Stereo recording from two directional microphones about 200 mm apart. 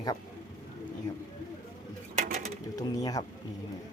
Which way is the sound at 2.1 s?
35° right (ahead or behind).